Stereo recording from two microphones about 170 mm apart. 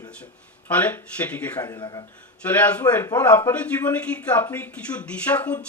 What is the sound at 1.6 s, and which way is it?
Speech, 25° left (ahead or behind).